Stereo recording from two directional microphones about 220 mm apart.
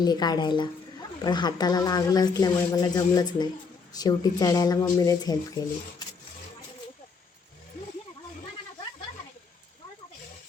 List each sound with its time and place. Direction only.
0.0 s speech: 20° left (ahead or behind)